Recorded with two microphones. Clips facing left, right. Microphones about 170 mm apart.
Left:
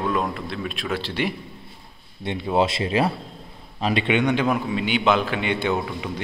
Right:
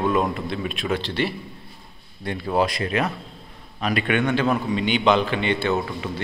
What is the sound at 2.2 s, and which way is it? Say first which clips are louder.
Speech: left 1 dB; 20° left (ahead or behind).